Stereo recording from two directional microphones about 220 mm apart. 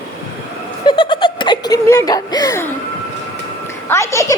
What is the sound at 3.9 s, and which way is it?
Speech, 15° left (ahead or behind).